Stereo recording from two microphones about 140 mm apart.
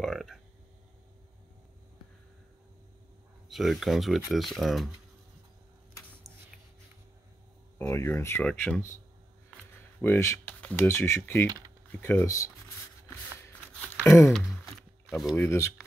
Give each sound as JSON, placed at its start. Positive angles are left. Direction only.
{"t": 0.0, "sound": "a sound", "side_deg": 0}
{"t": 3.4, "sound": "speech", "side_deg": 0}
{"t": 7.8, "sound": "speech", "side_deg": 20}
{"t": 8.5, "sound": "speech", "side_deg": 5}
{"t": 10.0, "sound": "speech", "side_deg": 20}
{"t": 15.0, "sound": "speech", "side_deg": 0}
{"t": 15.4, "sound": "speech", "side_deg": 20}